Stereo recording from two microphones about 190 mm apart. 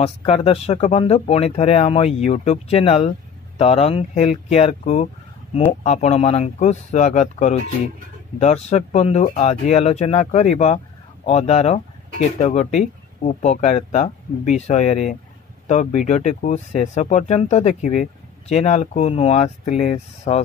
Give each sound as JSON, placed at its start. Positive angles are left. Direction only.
{"t": 0.0, "sound": "speech", "side_deg": 30}